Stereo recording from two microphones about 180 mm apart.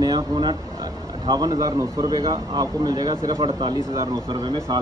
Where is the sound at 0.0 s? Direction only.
25° right (ahead or behind).